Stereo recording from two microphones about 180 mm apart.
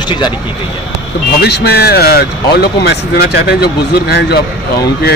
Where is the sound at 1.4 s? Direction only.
65° left (ahead or behind).